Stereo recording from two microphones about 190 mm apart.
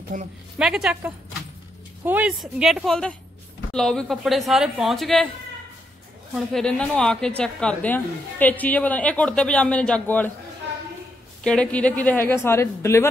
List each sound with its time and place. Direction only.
0.1 s a woman's voice: 45° right (ahead or behind)
0.6 s a woman's voice: 5° right (ahead or behind)
6.3 s a woman's voice: 5° left (ahead or behind)
11.4 s a woman's voice: 5° left (ahead or behind)